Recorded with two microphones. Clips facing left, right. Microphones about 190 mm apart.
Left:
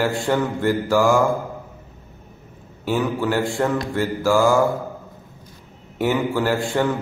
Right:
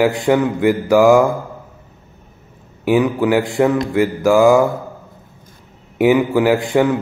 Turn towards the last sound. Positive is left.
turn(degrees=-15)  # may be behind; listen again after turning